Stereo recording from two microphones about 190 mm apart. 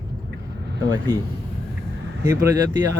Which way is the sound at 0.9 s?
25° right (ahead or behind).